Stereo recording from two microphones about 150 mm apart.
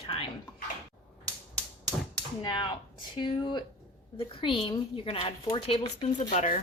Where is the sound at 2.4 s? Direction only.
30° left (ahead or behind).